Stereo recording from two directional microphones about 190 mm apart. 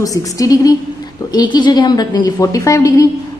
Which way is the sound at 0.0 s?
20° left (ahead or behind).